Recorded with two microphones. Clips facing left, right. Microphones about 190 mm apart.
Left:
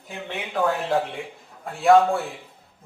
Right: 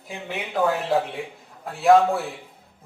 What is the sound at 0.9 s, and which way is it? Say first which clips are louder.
Speech: right 1 dB; centre (ahead or behind).